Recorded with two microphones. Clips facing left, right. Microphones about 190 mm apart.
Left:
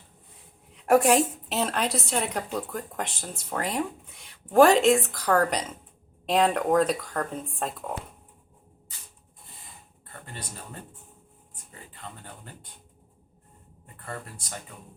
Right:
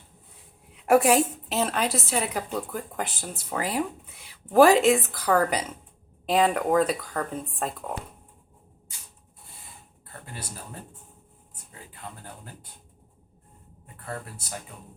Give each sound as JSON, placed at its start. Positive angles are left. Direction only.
{"t": 0.7, "sound": "a woman's voice", "side_deg": -5}
{"t": 14.0, "sound": "a woman's voice", "side_deg": -5}